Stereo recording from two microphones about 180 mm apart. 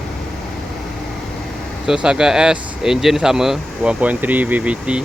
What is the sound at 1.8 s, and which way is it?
Speech, 5° right (ahead or behind).